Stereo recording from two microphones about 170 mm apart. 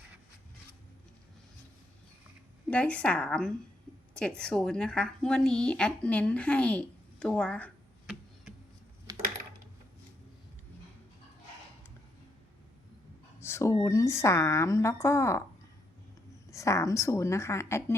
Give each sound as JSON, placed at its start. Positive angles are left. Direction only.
{"t": 2.6, "sound": "a woman's voice", "side_deg": 5}
{"t": 9.1, "sound": "coin", "side_deg": -20}
{"t": 13.4, "sound": "a sound", "side_deg": 15}
{"t": 13.7, "sound": "a woman's voice", "side_deg": 20}
{"t": 16.5, "sound": "a woman's voice", "side_deg": 20}